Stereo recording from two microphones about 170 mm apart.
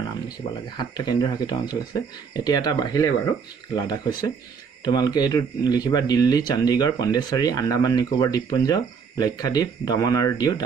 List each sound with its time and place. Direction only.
0.7 s speech: 25° left (ahead or behind)